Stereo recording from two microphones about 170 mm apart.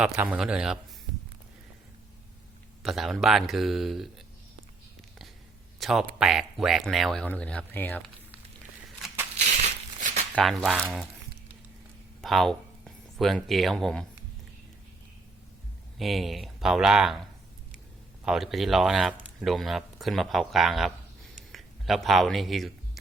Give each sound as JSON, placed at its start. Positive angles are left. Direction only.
{"t": 0.0, "sound": "speech", "side_deg": -5}
{"t": 2.8, "sound": "speech", "side_deg": 0}
{"t": 5.8, "sound": "speech", "side_deg": 0}
{"t": 9.4, "sound": "a sound", "side_deg": -45}
{"t": 10.3, "sound": "speech", "side_deg": 5}
{"t": 12.2, "sound": "speech", "side_deg": 0}
{"t": 16.0, "sound": "speech", "side_deg": 0}
{"t": 18.3, "sound": "speech", "side_deg": 0}